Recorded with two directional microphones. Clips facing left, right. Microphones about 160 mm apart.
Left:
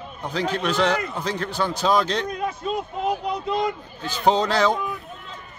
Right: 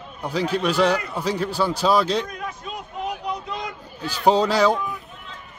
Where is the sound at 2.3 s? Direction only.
25° left (ahead or behind).